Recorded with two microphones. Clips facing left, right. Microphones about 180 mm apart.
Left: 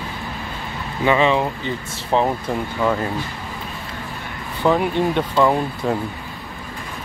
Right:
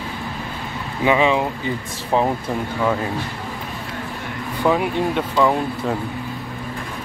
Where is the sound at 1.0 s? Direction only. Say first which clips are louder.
Even; 10° right (ahead or behind).